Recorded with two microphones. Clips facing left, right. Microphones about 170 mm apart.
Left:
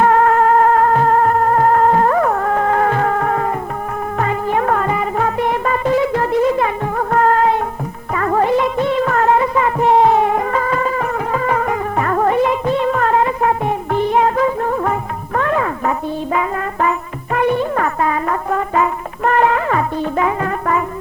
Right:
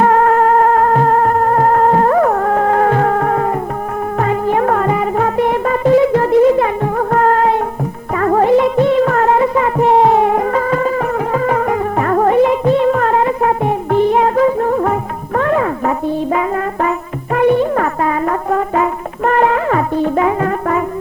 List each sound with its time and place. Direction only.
0.0 s music: 35° right (ahead or behind)
17.3 s music: 40° right (ahead or behind)